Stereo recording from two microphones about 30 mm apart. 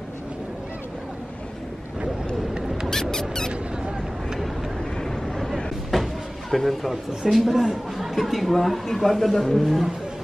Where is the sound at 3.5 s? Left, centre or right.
Right.